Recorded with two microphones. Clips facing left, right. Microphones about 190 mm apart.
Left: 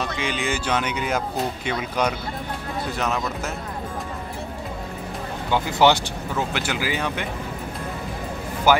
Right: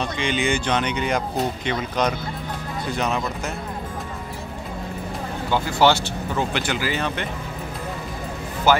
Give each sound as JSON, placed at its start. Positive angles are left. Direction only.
{"t": 0.0, "sound": "speech", "side_deg": 5}
{"t": 5.5, "sound": "speech", "side_deg": 15}
{"t": 6.3, "sound": "speech", "side_deg": 5}
{"t": 8.7, "sound": "speech", "side_deg": 10}